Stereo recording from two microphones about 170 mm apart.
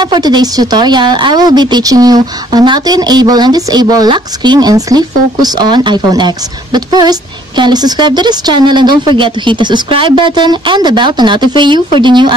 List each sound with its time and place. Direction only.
0.0 s speech: 25° right (ahead or behind)